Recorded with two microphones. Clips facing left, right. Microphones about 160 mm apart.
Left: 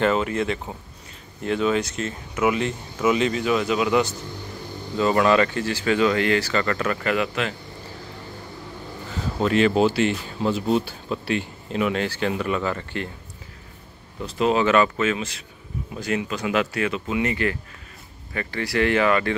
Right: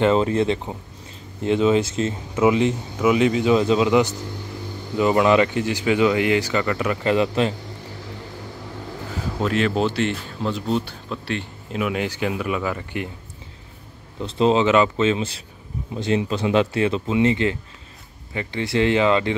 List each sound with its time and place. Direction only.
0.0 s speech: 30° right (ahead or behind)
3.0 s speech: 10° right (ahead or behind)
3.5 s speech: 25° right (ahead or behind)
7.1 s speech: 30° right (ahead or behind)
9.4 s speech: centre (ahead or behind)
14.2 s speech: 25° right (ahead or behind)